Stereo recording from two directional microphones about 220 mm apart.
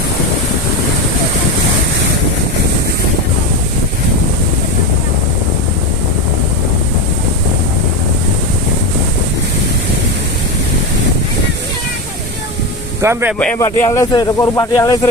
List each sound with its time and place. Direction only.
13.0 s speech: 10° right (ahead or behind)
13.4 s speech: 5° left (ahead or behind)